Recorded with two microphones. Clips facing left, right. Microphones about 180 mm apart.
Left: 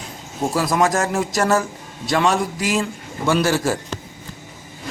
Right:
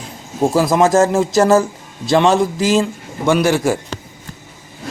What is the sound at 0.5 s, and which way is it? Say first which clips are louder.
A man's voice: right 6 dB; 25° right (ahead or behind).